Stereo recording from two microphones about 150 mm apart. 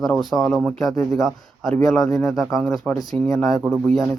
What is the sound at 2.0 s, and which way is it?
Speech, 25° left (ahead or behind).